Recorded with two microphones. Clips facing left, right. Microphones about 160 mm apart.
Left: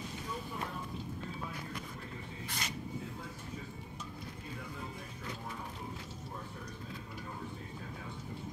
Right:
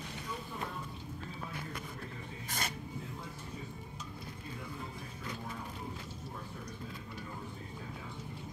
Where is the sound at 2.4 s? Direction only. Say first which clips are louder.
Right 3 dB; 50° right (ahead or behind).